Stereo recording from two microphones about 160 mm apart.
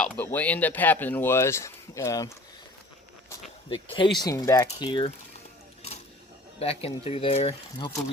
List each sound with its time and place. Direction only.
0.0 s speech: 10° left (ahead or behind)
3.7 s speech: 30° left (ahead or behind)
6.6 s speech: 40° left (ahead or behind)